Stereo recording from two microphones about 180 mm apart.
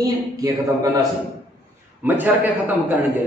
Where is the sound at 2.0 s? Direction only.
10° right (ahead or behind).